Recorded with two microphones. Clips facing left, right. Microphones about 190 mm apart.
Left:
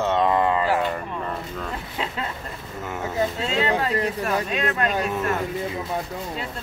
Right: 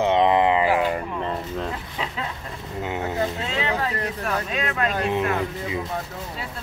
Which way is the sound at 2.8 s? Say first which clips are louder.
Right 3 dB; 20° right (ahead or behind).